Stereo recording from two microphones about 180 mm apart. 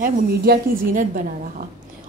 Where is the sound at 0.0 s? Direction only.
50° right (ahead or behind).